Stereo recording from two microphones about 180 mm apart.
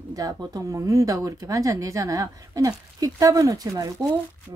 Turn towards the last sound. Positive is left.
turn(degrees=-20)  # may be behind; listen again after turning